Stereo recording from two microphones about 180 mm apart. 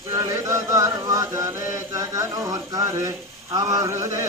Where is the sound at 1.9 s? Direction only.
20° right (ahead or behind).